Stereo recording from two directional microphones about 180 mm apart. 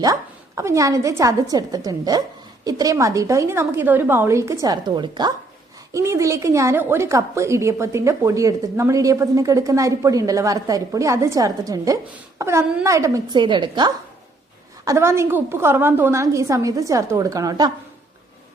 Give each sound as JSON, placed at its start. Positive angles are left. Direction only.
{"t": 0.0, "sound": "a woman's voice", "side_deg": -20}
{"t": 14.8, "sound": "a woman's voice", "side_deg": -15}